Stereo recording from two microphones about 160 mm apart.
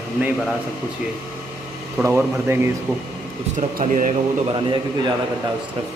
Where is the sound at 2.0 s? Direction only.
15° right (ahead or behind).